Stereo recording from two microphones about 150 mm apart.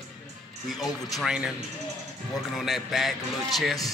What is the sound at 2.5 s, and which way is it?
Speech, centre (ahead or behind).